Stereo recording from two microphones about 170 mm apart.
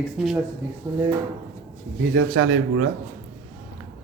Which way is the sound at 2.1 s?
90° right.